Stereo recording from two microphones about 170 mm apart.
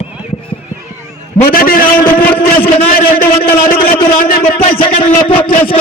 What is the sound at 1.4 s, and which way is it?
Speech, 60° left (ahead or behind).